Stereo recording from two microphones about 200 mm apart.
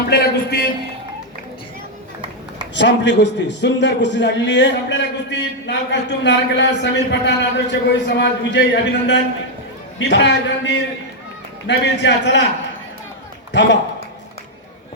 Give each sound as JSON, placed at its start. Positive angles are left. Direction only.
{"t": 0.1, "sound": "a man's voice", "side_deg": 55}
{"t": 2.7, "sound": "a man's voice", "side_deg": 60}
{"t": 13.5, "sound": "speech", "side_deg": 60}